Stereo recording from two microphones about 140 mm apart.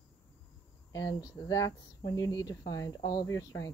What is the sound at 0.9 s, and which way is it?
Speech, 25° left (ahead or behind).